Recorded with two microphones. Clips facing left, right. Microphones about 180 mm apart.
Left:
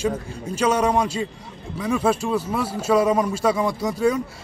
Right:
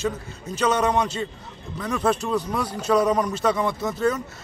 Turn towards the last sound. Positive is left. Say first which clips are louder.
# left 3 dB
turn(degrees=10)  # may be behind; listen again after turning